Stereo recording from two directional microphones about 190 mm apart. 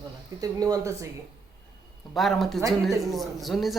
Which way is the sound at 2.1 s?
Centre (ahead or behind).